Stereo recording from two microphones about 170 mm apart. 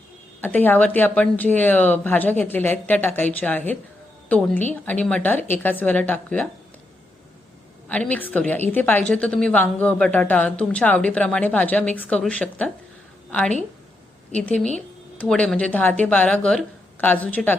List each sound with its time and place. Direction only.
0.4 s a woman's voice: 10° left (ahead or behind)
7.9 s a woman's voice: 10° left (ahead or behind)